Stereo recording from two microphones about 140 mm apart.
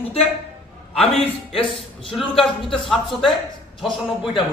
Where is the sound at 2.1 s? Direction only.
Centre (ahead or behind).